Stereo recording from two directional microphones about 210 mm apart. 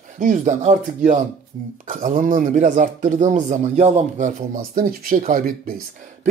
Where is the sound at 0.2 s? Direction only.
35° right (ahead or behind).